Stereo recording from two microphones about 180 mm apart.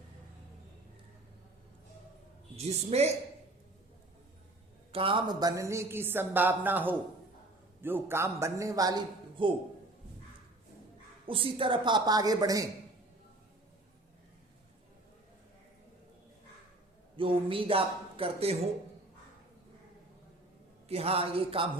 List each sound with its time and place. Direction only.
2.6 s speech: 35° right (ahead or behind)
4.9 s speech: 30° right (ahead or behind)
11.3 s a woman's voice: 30° right (ahead or behind)
17.2 s speech: 30° right (ahead or behind)
20.8 s speech: 35° right (ahead or behind)